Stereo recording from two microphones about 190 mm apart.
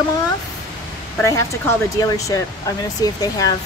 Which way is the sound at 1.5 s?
15° left (ahead or behind).